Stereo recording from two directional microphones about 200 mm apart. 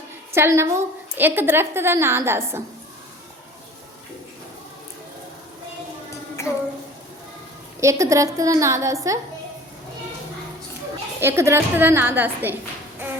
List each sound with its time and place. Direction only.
0.3 s a woman's voice: 15° right (ahead or behind)
6.4 s a sound: 15° left (ahead or behind)
7.8 s a woman's voice: 15° right (ahead or behind)
11.2 s a woman's voice: 10° right (ahead or behind)